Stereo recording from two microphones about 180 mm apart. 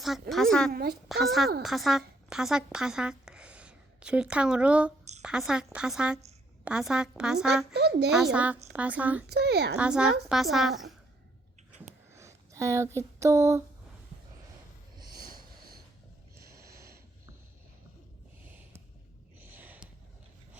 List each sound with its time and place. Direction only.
0.0 s a woman's voice: centre (ahead or behind)
0.7 s speech: 60° right (ahead or behind)
1.0 s a woman's voice: centre (ahead or behind)
7.7 s a woman's voice: 65° right (ahead or behind)
8.1 s a woman's voice: 5° right (ahead or behind)
9.3 s speech: 65° right (ahead or behind)
9.7 s a woman's voice: 5° right (ahead or behind)
12.1 s a sound: 15° right (ahead or behind)
14.9 s a sound: 20° right (ahead or behind)
15.2 s a sound: 55° right (ahead or behind)
19.4 s snort: 10° right (ahead or behind)